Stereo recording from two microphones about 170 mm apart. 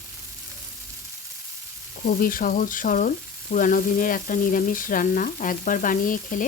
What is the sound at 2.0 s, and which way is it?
Frying, 55° left (ahead or behind).